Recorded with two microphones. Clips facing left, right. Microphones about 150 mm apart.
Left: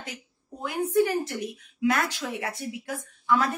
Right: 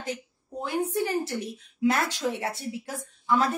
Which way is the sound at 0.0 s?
30° right (ahead or behind).